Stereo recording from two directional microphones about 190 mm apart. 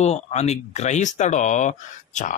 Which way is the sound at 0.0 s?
35° left (ahead or behind).